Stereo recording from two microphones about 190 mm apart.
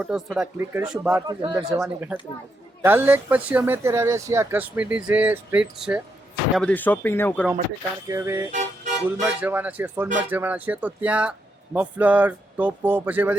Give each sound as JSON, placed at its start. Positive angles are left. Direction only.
{"t": 0.0, "sound": "speech", "side_deg": -5}
{"t": 1.3, "sound": "speech", "side_deg": -20}
{"t": 1.8, "sound": "speech", "side_deg": -5}
{"t": 6.6, "sound": "speech", "side_deg": 10}
{"t": 8.0, "sound": "speech", "side_deg": -15}
{"t": 8.5, "sound": "music", "side_deg": -40}
{"t": 9.2, "sound": "speech", "side_deg": -10}